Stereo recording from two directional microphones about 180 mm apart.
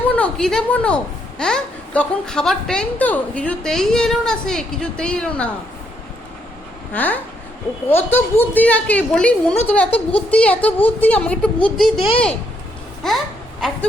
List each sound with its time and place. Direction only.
0.1 s a woman's voice: 5° left (ahead or behind)
6.9 s a woman's voice: 10° left (ahead or behind)
11.9 s speech: 30° left (ahead or behind)
13.0 s babbling: centre (ahead or behind)